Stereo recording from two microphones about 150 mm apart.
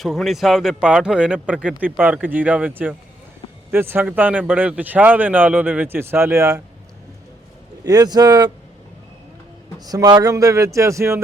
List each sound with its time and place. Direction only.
0.0 s speech: centre (ahead or behind); by 6.6 s 20° right (ahead or behind)
7.9 s speech: 25° right (ahead or behind)
9.8 s speech: 25° right (ahead or behind)